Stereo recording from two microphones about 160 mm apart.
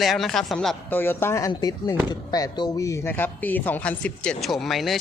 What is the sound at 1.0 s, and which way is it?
Speech, 15° left (ahead or behind).